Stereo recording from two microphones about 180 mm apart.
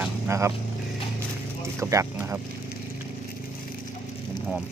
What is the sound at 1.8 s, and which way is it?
Speech, 15° right (ahead or behind).